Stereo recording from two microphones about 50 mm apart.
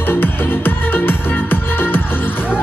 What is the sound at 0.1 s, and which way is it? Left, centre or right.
Music, left.